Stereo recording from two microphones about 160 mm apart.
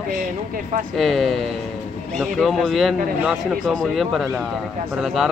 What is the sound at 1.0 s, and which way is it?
Speech, centre (ahead or behind).